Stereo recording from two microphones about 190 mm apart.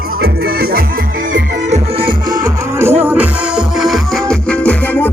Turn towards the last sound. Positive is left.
turn(degrees=10)  # may be behind; listen again after turning